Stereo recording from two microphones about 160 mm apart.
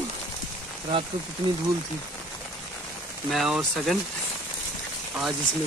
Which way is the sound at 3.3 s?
Centre (ahead or behind).